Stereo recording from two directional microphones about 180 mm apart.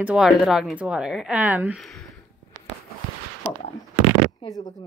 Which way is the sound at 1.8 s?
Centre (ahead or behind).